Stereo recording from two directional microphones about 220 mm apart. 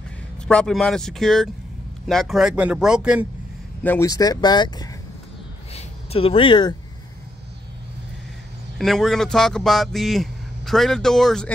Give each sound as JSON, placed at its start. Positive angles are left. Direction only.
{"t": 0.5, "sound": "speech", "side_deg": 5}
{"t": 3.8, "sound": "speech", "side_deg": 10}
{"t": 5.7, "sound": "a sound", "side_deg": 30}
{"t": 8.7, "sound": "speech", "side_deg": 0}